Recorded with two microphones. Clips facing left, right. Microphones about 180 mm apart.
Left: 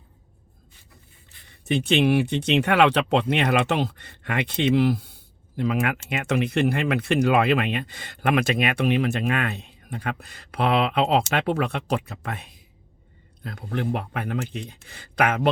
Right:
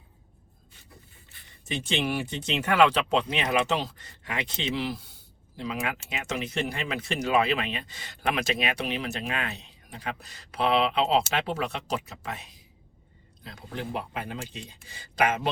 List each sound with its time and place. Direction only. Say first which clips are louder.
1.6 s speech: left 9 dB; 65° left (ahead or behind)